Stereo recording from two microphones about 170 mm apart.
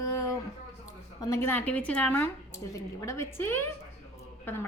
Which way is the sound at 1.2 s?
15° left (ahead or behind).